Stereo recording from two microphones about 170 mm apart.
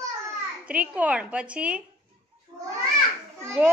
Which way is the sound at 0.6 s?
10° right (ahead or behind).